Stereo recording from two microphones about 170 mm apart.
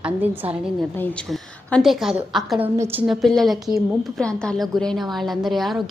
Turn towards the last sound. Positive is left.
turn(degrees=0)  # may be behind; listen again after turning